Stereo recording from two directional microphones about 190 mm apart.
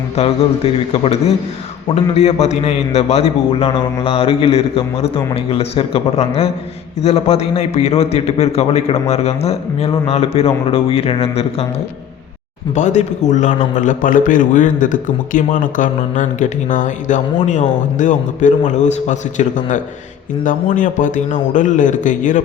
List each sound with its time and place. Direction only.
0.2 s a man's voice: 30° left (ahead or behind)
12.7 s a man's voice: 40° left (ahead or behind)